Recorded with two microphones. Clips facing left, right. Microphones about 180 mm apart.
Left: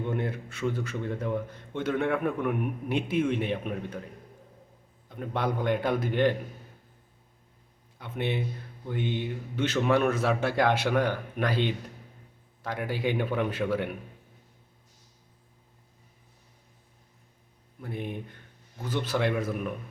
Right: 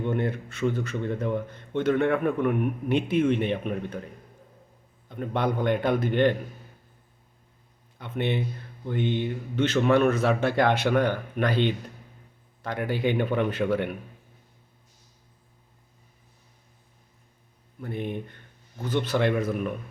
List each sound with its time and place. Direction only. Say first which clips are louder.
0.0 s a man's voice: right 4 dB; 5° left (ahead or behind)
5.0 s a man's voice: right 3 dB; 5° left (ahead or behind)
7.9 s a man's voice: right 3 dB; 5° left (ahead or behind)
17.8 s a man's voice: right 4 dB; 5° left (ahead or behind)